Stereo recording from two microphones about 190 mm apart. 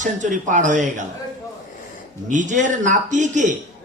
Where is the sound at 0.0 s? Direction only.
40° right (ahead or behind).